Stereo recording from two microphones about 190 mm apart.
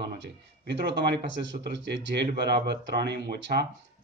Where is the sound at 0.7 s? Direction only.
60° right (ahead or behind).